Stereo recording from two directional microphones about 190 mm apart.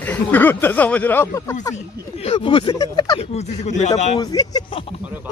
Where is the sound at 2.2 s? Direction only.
30° left (ahead or behind).